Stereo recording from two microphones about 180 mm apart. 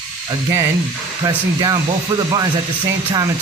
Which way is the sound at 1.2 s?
20° right (ahead or behind).